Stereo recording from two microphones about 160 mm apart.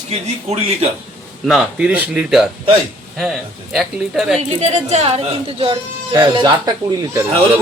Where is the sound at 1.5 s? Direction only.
5° right (ahead or behind).